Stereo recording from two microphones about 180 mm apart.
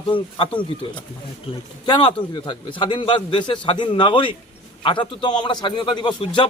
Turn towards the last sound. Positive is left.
turn(degrees=25)  # may be behind; listen again after turning